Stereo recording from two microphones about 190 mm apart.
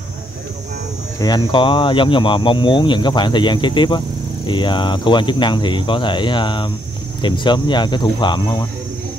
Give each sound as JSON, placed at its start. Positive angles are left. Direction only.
{"t": 1.5, "sound": "speech", "side_deg": 30}